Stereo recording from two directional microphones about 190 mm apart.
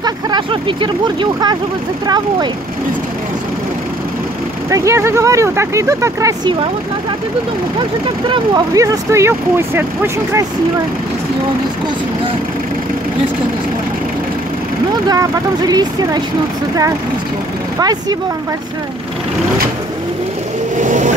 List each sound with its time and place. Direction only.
0.0 s speech: 25° right (ahead or behind)
4.6 s speech: 15° right (ahead or behind)
8.3 s speech: 20° right (ahead or behind)
15.0 s speech: 20° right (ahead or behind)
17.7 s speech: 20° right (ahead or behind)
20.8 s vehicle: 40° right (ahead or behind)